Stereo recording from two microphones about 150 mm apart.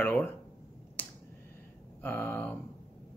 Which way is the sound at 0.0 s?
15° left (ahead or behind).